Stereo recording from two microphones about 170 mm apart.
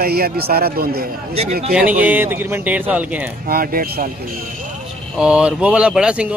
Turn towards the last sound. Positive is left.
turn(degrees=-5)  # may be behind; listen again after turning